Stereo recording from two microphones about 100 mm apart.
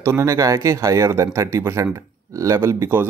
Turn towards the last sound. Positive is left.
turn(degrees=-25)  # may be behind; listen again after turning